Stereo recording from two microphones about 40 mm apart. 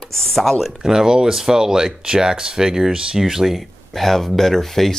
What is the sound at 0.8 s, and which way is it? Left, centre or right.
Speech, centre.